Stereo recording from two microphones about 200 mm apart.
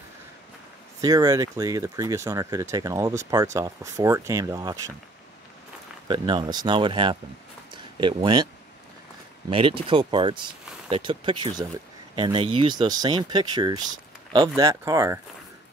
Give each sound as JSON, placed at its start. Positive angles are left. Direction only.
{"t": 1.0, "sound": "speech", "side_deg": -20}
{"t": 6.0, "sound": "speech", "side_deg": -25}
{"t": 7.7, "sound": "a sound", "side_deg": -25}
{"t": 9.5, "sound": "speech", "side_deg": -25}